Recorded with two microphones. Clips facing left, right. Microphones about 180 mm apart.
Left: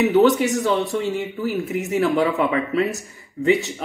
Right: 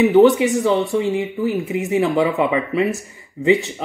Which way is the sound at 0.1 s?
15° right (ahead or behind).